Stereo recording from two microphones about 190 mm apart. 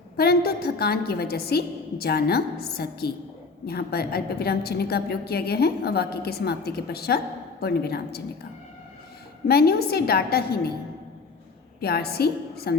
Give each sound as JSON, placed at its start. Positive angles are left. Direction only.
{"t": 0.2, "sound": "a woman's voice", "side_deg": 55}
{"t": 9.5, "sound": "a woman's voice", "side_deg": 55}
{"t": 11.8, "sound": "a woman's voice", "side_deg": 55}